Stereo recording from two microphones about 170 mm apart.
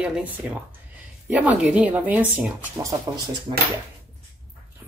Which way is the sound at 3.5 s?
30° right (ahead or behind).